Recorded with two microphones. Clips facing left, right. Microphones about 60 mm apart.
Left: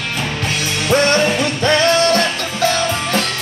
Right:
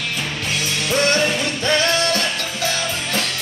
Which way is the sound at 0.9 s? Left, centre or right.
Left.